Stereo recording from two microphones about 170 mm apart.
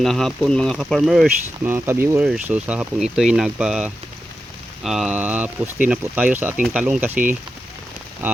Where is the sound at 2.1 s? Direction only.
5° right (ahead or behind).